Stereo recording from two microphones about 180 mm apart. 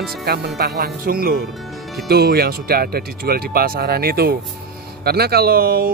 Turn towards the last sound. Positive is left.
turn(degrees=-55)  # may be behind; listen again after turning